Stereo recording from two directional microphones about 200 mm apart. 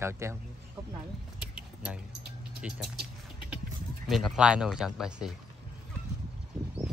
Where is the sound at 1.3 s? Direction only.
5° right (ahead or behind).